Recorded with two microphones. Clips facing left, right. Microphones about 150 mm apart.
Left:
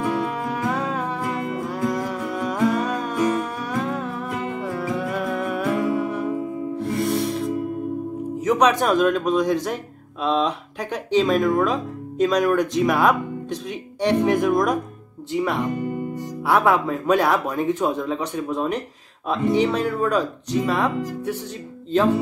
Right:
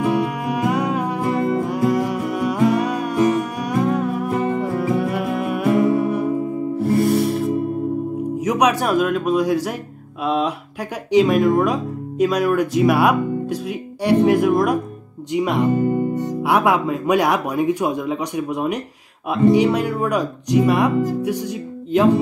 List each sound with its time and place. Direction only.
0.0 s music: 15° right (ahead or behind)
4.3 s music: 35° right (ahead or behind)
5.1 s music: 10° right (ahead or behind)
7.0 s music: centre (ahead or behind)
8.4 s speech: 10° right (ahead or behind)
15.7 s speech: 35° right (ahead or behind)
16.4 s speech: 15° right (ahead or behind)